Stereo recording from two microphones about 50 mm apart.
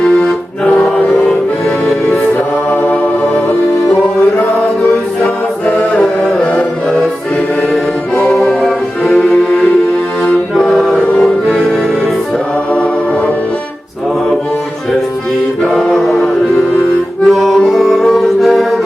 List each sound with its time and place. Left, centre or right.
0.0 s music: left
5.2 s music: left
8.4 s music: centre
10.6 s music: centre
12.7 s music: left
15.7 s music: centre